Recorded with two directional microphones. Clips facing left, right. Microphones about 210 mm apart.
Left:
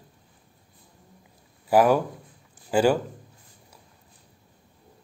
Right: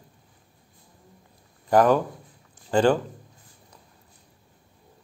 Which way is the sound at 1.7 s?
10° left (ahead or behind).